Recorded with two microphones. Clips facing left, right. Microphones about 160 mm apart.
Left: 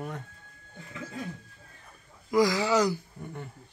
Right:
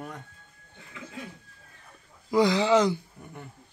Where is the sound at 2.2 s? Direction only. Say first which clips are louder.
Right 2 dB; 25° right (ahead or behind).